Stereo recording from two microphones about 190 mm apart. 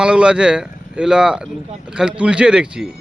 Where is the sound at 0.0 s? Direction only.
5° right (ahead or behind).